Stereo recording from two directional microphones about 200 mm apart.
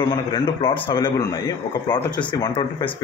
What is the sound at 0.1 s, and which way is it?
Speech, 25° left (ahead or behind).